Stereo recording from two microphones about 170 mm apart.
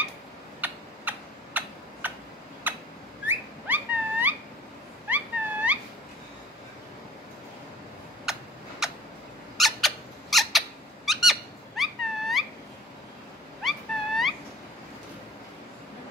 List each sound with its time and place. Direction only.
0.6 s typing: 10° right (ahead or behind)
2.7 s bird: 10° right (ahead or behind)
3.3 s a sound: 10° right (ahead or behind)
8.3 s a sound: 5° right (ahead or behind)
9.6 s squeak: centre (ahead or behind)
13.6 s dog: centre (ahead or behind)